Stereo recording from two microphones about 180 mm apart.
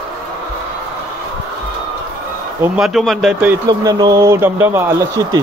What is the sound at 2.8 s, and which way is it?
Speech, centre (ahead or behind).